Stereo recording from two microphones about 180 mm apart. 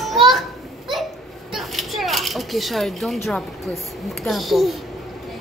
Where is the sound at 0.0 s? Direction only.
Centre (ahead or behind).